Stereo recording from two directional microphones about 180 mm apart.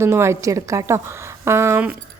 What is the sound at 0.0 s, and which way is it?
A woman's voice, 15° right (ahead or behind).